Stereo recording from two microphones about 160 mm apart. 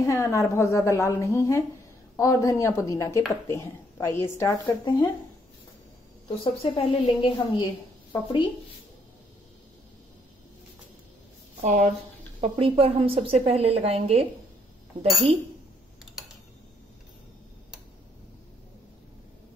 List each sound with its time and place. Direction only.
0.0 s a woman's voice: 20° left (ahead or behind)
6.2 s a woman's voice: 35° left (ahead or behind)
11.6 s a woman's voice: 45° right (ahead or behind)